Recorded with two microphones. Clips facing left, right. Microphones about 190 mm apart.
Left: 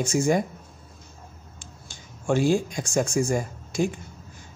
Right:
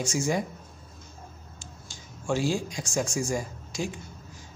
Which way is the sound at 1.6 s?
60° left (ahead or behind).